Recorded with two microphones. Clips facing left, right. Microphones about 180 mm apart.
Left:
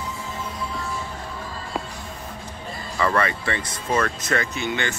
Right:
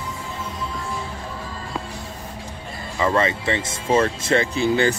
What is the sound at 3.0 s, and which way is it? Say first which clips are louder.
Speech: right 2 dB; 20° right (ahead or behind).